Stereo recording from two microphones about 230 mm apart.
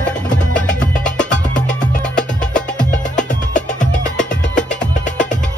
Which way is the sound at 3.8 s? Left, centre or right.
Left.